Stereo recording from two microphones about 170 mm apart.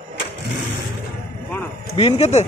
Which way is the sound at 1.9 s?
35° left (ahead or behind).